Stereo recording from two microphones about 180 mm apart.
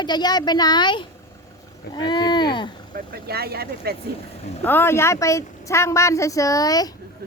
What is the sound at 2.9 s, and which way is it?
Speech, 60° right (ahead or behind).